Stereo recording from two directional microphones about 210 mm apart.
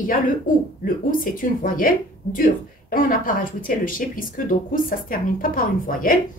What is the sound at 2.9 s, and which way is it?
A woman's voice, 40° left (ahead or behind).